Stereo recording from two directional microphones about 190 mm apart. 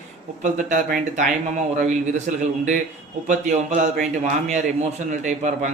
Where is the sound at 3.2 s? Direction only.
40° right (ahead or behind).